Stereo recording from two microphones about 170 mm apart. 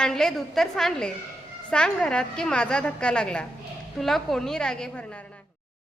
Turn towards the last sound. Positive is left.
turn(degrees=5)  # may be behind; listen again after turning